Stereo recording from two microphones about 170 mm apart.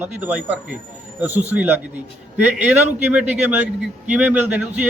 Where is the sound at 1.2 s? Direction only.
40° right (ahead or behind).